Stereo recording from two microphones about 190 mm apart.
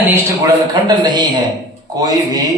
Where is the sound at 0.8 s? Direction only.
20° right (ahead or behind).